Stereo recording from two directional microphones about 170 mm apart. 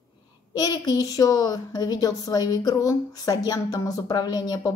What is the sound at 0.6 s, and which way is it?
Speech, 20° left (ahead or behind).